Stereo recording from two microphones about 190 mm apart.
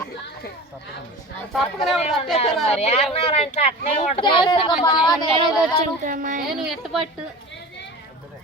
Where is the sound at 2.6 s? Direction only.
35° left (ahead or behind).